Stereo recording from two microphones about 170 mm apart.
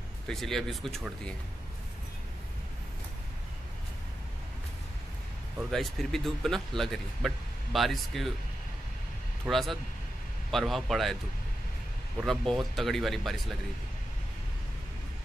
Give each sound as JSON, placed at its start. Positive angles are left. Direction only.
{"t": 0.3, "sound": "speech", "side_deg": 0}
{"t": 5.6, "sound": "speech", "side_deg": 0}
{"t": 9.5, "sound": "speech", "side_deg": 0}
{"t": 12.2, "sound": "speech", "side_deg": 0}